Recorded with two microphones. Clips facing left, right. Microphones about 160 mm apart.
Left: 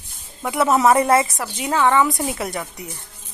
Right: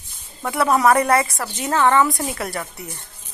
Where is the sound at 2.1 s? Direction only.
20° left (ahead or behind).